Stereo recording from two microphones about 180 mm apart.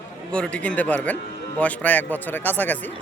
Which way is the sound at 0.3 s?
5° left (ahead or behind).